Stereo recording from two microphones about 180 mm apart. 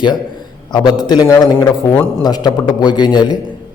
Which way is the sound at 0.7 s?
25° left (ahead or behind).